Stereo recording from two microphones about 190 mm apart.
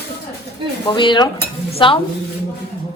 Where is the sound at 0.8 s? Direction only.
25° left (ahead or behind).